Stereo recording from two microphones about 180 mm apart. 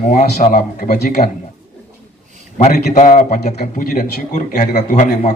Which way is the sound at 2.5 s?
45° left (ahead or behind).